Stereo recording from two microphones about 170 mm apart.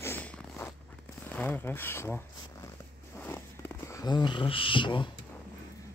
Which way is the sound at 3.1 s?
10° left (ahead or behind).